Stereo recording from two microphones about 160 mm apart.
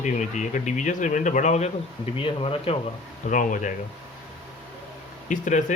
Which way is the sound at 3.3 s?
50° left (ahead or behind).